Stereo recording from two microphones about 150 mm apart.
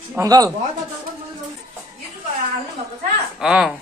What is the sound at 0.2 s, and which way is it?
Speech, 25° right (ahead or behind).